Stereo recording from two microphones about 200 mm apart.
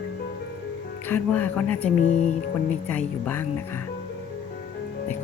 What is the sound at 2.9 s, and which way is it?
Speech, 10° left (ahead or behind).